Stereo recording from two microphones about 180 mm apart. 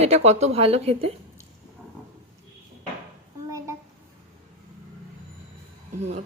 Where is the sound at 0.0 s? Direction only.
35° right (ahead or behind).